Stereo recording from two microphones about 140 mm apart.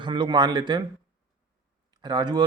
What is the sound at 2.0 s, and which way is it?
Speech, 30° right (ahead or behind).